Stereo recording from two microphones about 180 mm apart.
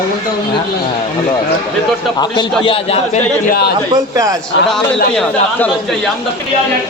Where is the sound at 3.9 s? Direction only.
20° right (ahead or behind).